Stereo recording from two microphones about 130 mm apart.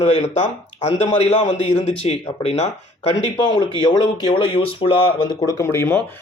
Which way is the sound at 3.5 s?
35° left (ahead or behind).